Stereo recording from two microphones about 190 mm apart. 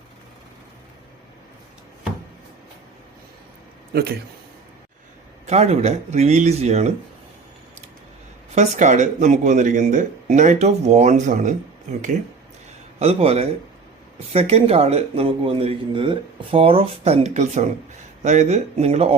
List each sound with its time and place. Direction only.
5.5 s speech: 35° right (ahead or behind)
8.5 s speech: 40° right (ahead or behind)
13.0 s speech: 30° right (ahead or behind)